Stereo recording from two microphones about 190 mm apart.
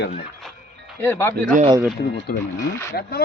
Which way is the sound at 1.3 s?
45° right (ahead or behind).